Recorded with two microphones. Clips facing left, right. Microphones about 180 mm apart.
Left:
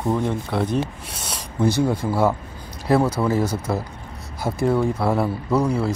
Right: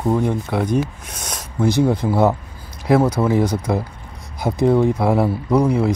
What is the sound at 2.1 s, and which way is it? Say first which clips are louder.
Speech: right 3 dB; 20° right (ahead or behind).